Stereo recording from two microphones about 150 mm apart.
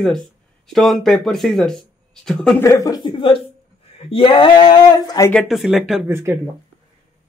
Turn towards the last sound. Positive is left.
turn(degrees=-15)  # may be behind; listen again after turning